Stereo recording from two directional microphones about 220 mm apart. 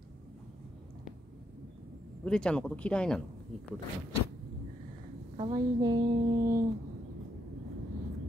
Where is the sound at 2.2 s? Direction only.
5° left (ahead or behind).